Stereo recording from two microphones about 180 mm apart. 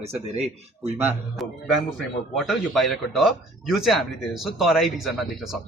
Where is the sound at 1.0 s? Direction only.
Centre (ahead or behind).